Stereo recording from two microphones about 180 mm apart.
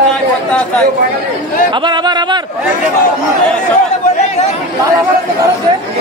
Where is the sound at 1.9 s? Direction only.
25° right (ahead or behind).